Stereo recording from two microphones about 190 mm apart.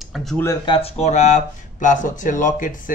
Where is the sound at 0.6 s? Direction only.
30° left (ahead or behind).